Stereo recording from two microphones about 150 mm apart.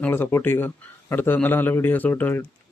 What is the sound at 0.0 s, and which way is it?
A man's voice, 15° left (ahead or behind).